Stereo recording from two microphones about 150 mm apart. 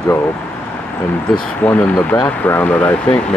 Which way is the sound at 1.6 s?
10° left (ahead or behind).